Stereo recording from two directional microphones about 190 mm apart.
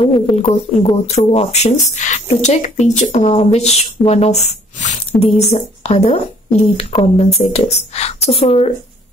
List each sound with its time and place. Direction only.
0.0 s speech: 30° left (ahead or behind)